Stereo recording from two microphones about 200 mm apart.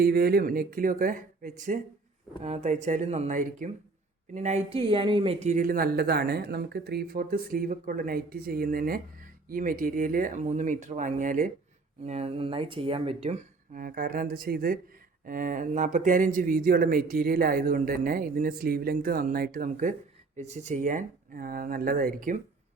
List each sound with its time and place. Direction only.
0.0 s speech: 50° right (ahead or behind); by 13.4 s 30° right (ahead or behind)
13.7 s speech: 45° right (ahead or behind)